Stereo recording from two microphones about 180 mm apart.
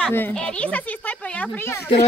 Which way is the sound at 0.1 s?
10° left (ahead or behind).